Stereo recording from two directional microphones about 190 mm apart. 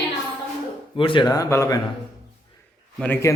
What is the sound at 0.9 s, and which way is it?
Speech, 25° left (ahead or behind).